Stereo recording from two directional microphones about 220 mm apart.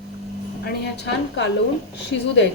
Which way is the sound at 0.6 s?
50° left (ahead or behind).